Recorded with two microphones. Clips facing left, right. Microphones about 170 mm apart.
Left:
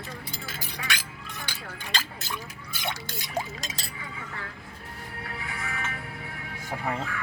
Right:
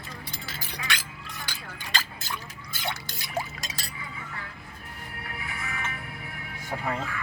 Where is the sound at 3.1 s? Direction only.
20° left (ahead or behind).